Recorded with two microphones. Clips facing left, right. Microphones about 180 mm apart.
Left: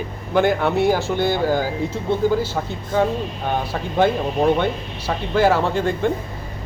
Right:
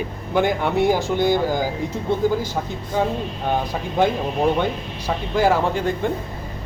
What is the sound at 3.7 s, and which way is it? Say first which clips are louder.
A man's voice: left 4 dB; 10° right (ahead or behind).